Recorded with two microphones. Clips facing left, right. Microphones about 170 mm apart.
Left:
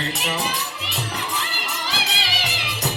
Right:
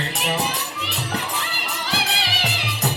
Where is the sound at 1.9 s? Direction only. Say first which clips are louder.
Right 4 dB; 60° right (ahead or behind).